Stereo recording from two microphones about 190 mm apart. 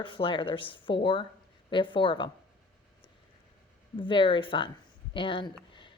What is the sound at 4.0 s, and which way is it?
Speech, 25° left (ahead or behind).